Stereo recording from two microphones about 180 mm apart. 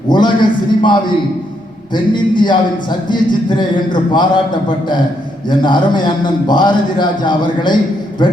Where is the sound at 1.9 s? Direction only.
25° left (ahead or behind).